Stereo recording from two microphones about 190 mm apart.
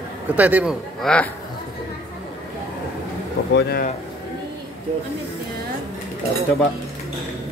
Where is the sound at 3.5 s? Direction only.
55° left (ahead or behind).